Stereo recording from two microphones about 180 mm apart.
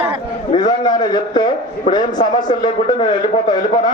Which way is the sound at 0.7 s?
25° left (ahead or behind).